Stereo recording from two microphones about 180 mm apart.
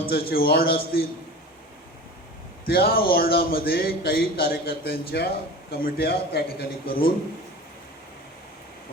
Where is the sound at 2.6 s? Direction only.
60° left (ahead or behind).